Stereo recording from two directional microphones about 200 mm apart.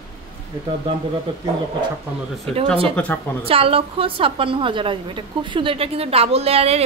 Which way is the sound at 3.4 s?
30° right (ahead or behind).